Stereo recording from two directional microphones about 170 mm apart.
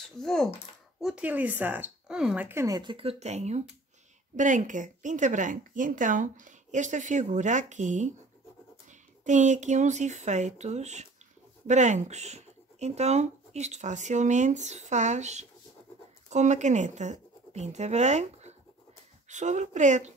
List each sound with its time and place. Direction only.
0.2 s speech: centre (ahead or behind); by 8.1 s 45° right (ahead or behind)
9.2 s speech: 45° right (ahead or behind)